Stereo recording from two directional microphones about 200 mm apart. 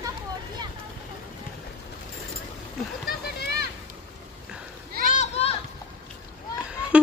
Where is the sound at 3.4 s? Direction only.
55° left (ahead or behind).